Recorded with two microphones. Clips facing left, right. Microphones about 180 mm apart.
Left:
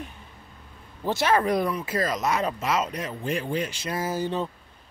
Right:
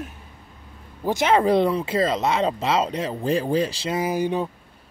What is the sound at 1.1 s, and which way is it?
Speech, 20° right (ahead or behind).